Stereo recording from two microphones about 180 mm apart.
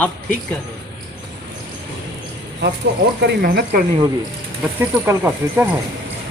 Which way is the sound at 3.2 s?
60° right (ahead or behind).